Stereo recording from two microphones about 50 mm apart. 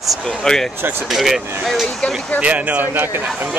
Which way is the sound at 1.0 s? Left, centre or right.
Centre.